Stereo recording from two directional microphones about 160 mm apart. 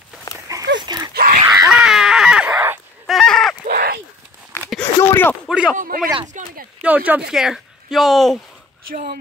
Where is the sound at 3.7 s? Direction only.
75° right (ahead or behind).